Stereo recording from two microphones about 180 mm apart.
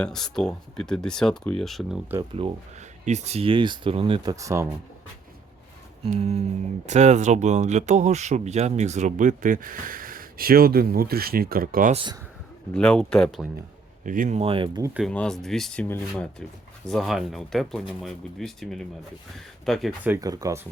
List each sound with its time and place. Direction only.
0.0 s speech: 5° left (ahead or behind)
2.4 s speech: 30° right (ahead or behind)
4.4 s speech: 15° right (ahead or behind)
6.1 s speech: 35° right (ahead or behind)
12.7 s speech: 5° left (ahead or behind)
14.0 s speech: 45° right (ahead or behind); by 14.9 s 20° right (ahead or behind)
15.1 s speech: 5° left (ahead or behind)
20.1 s speech: 20° right (ahead or behind)